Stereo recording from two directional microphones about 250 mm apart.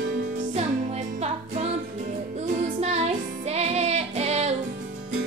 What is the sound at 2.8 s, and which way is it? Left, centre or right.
Music, right.